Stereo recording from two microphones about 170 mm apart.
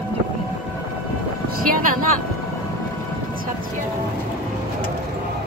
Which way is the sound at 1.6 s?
55° right (ahead or behind).